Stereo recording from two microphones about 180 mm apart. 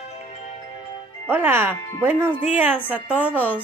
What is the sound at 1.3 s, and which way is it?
Speech, 10° right (ahead or behind).